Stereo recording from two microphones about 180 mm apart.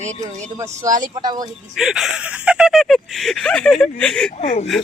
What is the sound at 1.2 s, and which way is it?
Speech, 25° right (ahead or behind).